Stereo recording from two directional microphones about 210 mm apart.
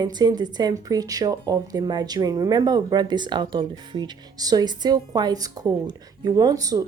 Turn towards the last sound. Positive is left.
turn(degrees=-15)  # may be behind; listen again after turning